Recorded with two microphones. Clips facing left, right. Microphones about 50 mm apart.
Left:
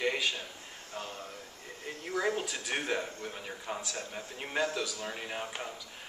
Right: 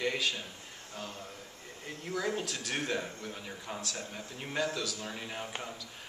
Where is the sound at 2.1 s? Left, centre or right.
Centre.